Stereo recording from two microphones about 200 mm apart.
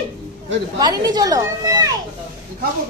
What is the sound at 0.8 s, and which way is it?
Speech, 20° right (ahead or behind).